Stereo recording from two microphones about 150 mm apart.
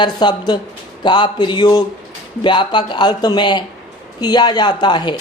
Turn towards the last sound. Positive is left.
turn(degrees=30)  # may be behind; listen again after turning